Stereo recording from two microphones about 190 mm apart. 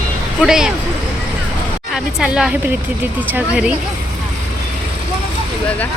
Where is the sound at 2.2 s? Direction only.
5° right (ahead or behind).